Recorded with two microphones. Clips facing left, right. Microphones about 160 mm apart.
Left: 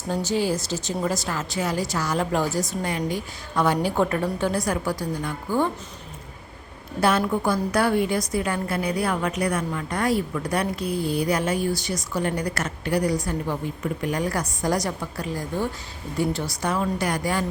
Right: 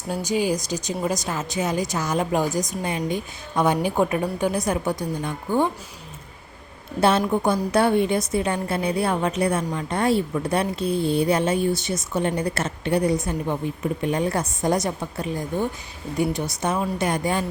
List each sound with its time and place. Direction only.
0.1 s a woman's voice: 15° right (ahead or behind)
7.0 s a woman's voice: 25° right (ahead or behind)